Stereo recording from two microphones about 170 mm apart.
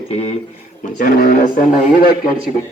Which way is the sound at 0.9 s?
55° left (ahead or behind).